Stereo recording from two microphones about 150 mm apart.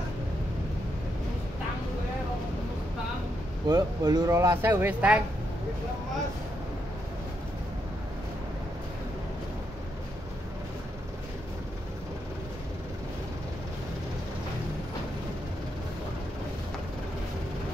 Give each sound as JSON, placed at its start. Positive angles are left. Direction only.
{"t": 3.6, "sound": "speech", "side_deg": -25}